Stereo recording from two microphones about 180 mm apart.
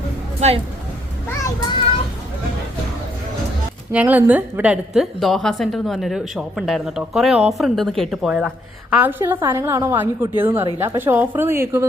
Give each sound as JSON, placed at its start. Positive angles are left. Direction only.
{"t": 0.3, "sound": "speech", "side_deg": -35}
{"t": 3.9, "sound": "a woman's voice", "side_deg": -10}